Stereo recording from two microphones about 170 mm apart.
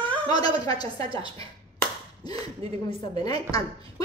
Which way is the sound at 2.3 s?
35° right (ahead or behind).